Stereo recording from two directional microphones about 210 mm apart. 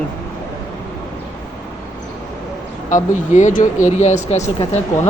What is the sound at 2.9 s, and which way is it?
Speech, 35° left (ahead or behind).